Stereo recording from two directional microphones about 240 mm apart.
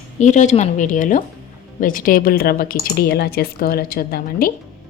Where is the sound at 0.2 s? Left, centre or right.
Left.